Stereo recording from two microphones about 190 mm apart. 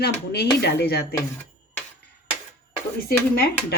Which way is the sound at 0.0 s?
60° left (ahead or behind).